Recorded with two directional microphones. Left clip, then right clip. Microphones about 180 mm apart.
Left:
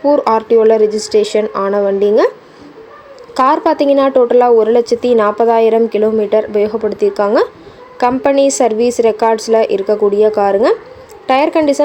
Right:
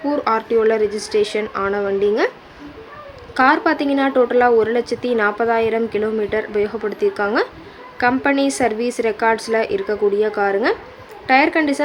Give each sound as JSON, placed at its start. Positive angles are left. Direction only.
{"t": 0.0, "sound": "a woman's voice", "side_deg": 20}
{"t": 3.3, "sound": "a woman's voice", "side_deg": 15}